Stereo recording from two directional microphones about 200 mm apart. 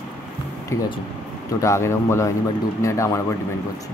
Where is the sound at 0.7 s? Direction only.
15° left (ahead or behind).